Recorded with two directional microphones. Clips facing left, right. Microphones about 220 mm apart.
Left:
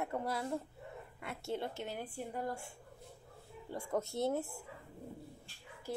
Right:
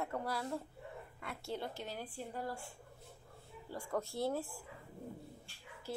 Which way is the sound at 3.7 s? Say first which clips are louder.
Left 2 dB; 25° left (ahead or behind).